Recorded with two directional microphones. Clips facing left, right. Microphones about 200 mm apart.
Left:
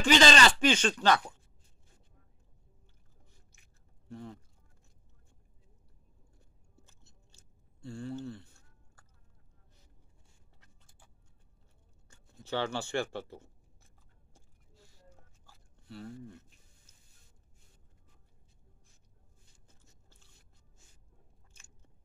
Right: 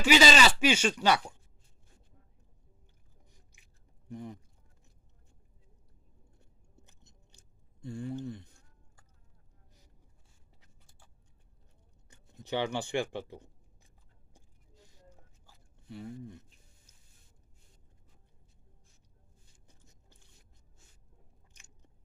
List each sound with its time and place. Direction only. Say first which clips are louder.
0.0 s speech: even; 5° right (ahead or behind)
3.3 s a sound: right 1 dB; 15° right (ahead or behind)
4.1 s speech: right 2 dB; 15° right (ahead or behind)
6.7 s a sound: right 1 dB; 20° right (ahead or behind)
12.1 s writing: right 1 dB; 20° right (ahead or behind)
19.7 s biting: right 2 dB; 15° right (ahead or behind)